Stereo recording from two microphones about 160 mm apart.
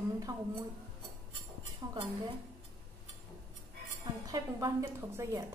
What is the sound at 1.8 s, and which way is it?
Speech, 25° right (ahead or behind).